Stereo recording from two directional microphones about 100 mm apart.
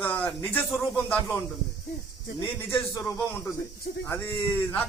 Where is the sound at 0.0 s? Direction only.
15° left (ahead or behind).